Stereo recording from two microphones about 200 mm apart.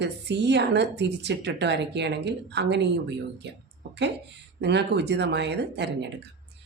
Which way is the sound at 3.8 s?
60° right (ahead or behind).